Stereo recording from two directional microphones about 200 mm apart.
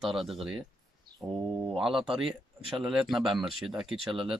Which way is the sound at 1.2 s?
25° right (ahead or behind).